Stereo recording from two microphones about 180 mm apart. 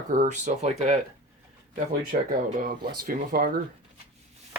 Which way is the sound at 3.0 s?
55° right (ahead or behind).